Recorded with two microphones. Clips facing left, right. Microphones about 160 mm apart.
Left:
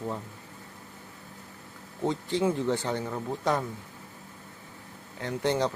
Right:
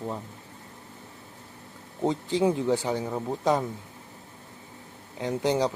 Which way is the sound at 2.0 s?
15° right (ahead or behind).